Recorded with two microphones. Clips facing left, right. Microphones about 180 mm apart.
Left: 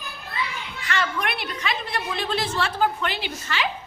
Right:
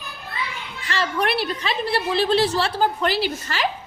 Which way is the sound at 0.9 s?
30° right (ahead or behind).